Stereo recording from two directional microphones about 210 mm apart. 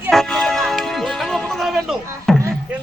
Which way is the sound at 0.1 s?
Centre (ahead or behind).